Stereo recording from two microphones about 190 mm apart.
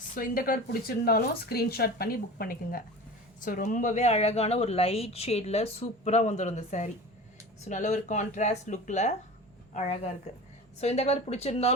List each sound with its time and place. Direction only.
0.1 s speech: 50° left (ahead or behind)